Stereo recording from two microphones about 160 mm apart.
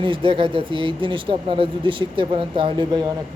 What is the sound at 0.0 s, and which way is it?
Speech, 30° right (ahead or behind).